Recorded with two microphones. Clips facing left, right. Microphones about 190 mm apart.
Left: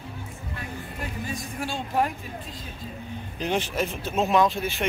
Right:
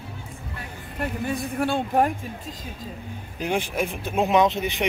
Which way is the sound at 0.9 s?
60° right (ahead or behind).